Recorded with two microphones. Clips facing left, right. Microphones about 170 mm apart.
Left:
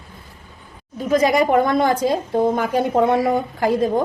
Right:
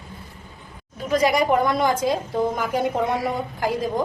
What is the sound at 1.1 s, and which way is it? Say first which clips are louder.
Speech: left 3 dB; 55° left (ahead or behind).